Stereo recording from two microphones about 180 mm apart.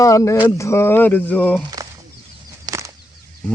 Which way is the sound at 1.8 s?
20° right (ahead or behind).